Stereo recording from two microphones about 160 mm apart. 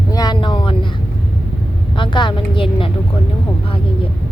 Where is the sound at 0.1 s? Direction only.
25° left (ahead or behind).